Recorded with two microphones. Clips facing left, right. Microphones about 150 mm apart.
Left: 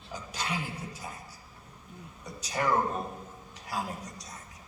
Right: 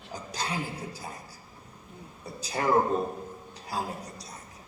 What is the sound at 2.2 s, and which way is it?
Speech, 30° right (ahead or behind).